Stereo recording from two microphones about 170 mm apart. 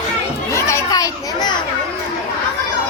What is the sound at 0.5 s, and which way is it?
Children playing, 20° left (ahead or behind).